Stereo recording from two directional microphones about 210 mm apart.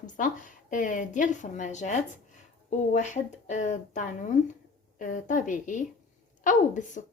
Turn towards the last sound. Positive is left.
turn(degrees=35)  # may be behind; listen again after turning